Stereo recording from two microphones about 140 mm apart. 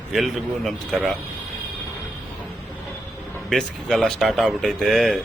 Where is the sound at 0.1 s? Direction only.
Centre (ahead or behind).